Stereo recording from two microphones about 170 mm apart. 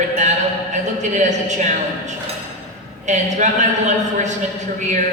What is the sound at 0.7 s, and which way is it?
A man's voice, 45° right (ahead or behind).